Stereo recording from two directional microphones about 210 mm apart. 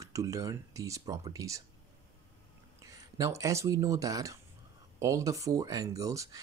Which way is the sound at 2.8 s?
15° right (ahead or behind).